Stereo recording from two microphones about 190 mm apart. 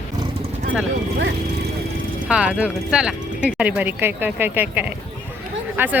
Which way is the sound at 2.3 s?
5° right (ahead or behind).